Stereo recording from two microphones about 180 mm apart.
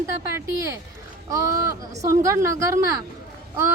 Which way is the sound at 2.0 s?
15° right (ahead or behind).